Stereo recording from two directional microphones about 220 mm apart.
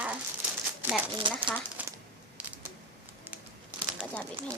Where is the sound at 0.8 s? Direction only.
5° right (ahead or behind).